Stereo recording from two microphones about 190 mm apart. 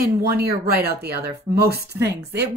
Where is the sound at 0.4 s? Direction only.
55° right (ahead or behind).